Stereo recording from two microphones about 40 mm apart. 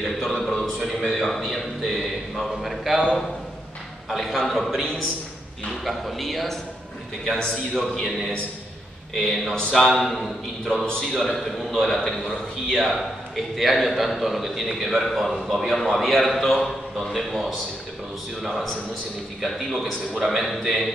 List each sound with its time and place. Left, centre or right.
0.0 s a sound: centre
0.7 s a man's voice: centre
4.1 s a man's voice: centre
5.9 s a man's voice: centre
7.3 s a man's voice: left
7.7 s a man's voice: centre
9.1 s a man's voice: centre
9.6 s a man's voice: centre
10.0 s a man's voice: centre
11.3 s a man's voice: centre
12.7 s a man's voice: centre